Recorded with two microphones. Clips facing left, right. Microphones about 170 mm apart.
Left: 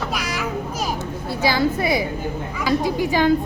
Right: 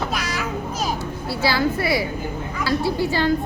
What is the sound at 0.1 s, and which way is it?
Children playing, 10° left (ahead or behind).